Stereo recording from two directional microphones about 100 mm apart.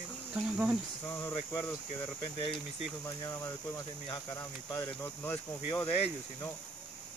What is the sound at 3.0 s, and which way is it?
Speech, 30° left (ahead or behind).